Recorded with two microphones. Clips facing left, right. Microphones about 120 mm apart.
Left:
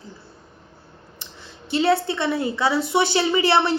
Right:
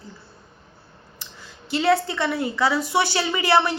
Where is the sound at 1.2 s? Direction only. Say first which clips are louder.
Left 1 dB; 25° left (ahead or behind).